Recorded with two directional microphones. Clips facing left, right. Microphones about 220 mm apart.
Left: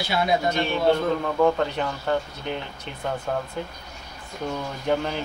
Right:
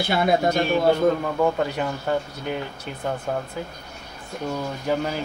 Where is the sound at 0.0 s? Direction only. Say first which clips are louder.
Right 3 dB; 50° right (ahead or behind).